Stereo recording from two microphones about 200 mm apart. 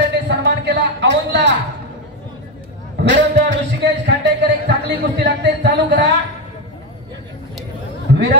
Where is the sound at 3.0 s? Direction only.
60° right (ahead or behind).